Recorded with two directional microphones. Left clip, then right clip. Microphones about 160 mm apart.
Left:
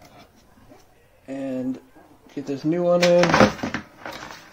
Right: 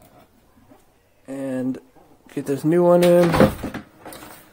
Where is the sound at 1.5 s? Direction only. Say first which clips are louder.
Right 4 dB; 45° right (ahead or behind).